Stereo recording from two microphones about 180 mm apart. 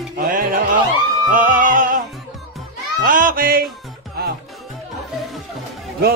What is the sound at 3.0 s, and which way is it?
Music, 50° right (ahead or behind).